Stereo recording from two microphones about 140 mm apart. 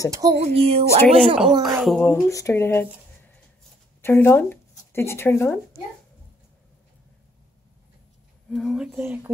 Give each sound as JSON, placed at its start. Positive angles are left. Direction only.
{"t": 0.4, "sound": "speech", "side_deg": -45}
{"t": 1.6, "sound": "speech", "side_deg": 0}
{"t": 2.0, "sound": "speech", "side_deg": 20}
{"t": 4.0, "sound": "speech", "side_deg": 15}
{"t": 8.5, "sound": "speech", "side_deg": 0}